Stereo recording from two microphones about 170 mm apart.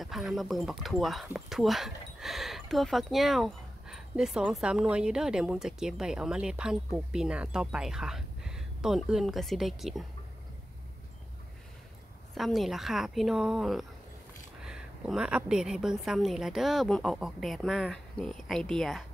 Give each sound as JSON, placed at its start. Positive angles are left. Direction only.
{"t": 0.0, "sound": "speech", "side_deg": 0}
{"t": 12.4, "sound": "speech", "side_deg": 0}